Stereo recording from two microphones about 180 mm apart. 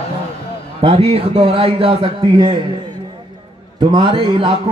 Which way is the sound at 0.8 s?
30° right (ahead or behind).